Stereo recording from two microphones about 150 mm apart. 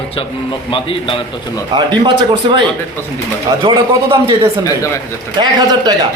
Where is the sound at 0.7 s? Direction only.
35° left (ahead or behind).